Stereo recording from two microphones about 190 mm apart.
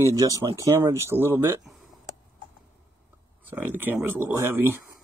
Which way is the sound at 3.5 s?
10° right (ahead or behind).